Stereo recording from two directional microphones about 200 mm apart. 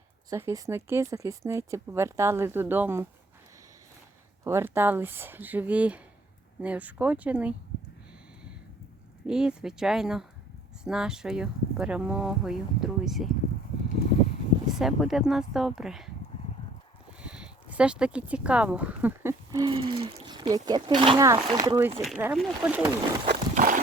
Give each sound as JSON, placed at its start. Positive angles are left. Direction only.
{"t": 0.3, "sound": "speech", "side_deg": -15}
{"t": 4.4, "sound": "speech", "side_deg": -15}
{"t": 9.2, "sound": "speech", "side_deg": -5}
{"t": 14.8, "sound": "speech", "side_deg": 0}
{"t": 17.2, "sound": "speech", "side_deg": -5}
{"t": 23.3, "sound": "a sound", "side_deg": -40}